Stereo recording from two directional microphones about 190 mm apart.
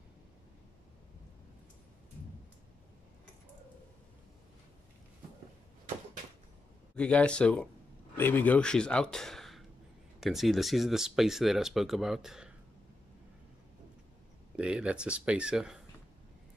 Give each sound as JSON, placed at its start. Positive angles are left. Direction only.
{"t": 7.0, "sound": "speech", "side_deg": 5}
{"t": 14.6, "sound": "speech", "side_deg": -5}